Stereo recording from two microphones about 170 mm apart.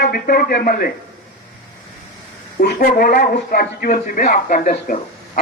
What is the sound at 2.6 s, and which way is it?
A man's voice, 60° left (ahead or behind).